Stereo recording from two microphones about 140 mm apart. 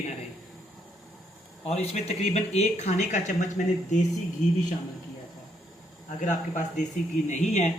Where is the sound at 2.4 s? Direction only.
50° left (ahead or behind).